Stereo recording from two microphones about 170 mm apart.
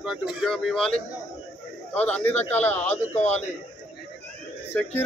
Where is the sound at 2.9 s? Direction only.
40° left (ahead or behind).